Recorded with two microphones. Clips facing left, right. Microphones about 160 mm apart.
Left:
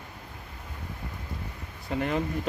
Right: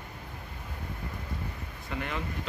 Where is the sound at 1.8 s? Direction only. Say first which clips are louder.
Left 7 dB; 40° left (ahead or behind).